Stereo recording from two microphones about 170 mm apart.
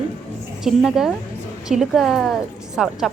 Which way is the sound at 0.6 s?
5° right (ahead or behind).